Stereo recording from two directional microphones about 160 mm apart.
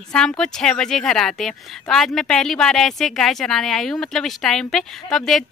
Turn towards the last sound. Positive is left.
turn(degrees=5)  # may be behind; listen again after turning